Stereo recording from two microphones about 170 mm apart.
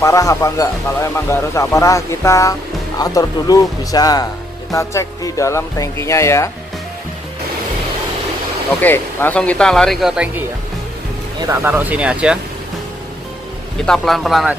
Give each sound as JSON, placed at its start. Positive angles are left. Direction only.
{"t": 0.0, "sound": "speech", "side_deg": 20}
{"t": 8.8, "sound": "speech", "side_deg": 10}
{"t": 11.4, "sound": "speech", "side_deg": -15}
{"t": 13.8, "sound": "speech", "side_deg": 0}